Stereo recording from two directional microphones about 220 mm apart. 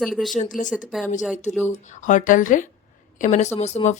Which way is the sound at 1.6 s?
30° left (ahead or behind).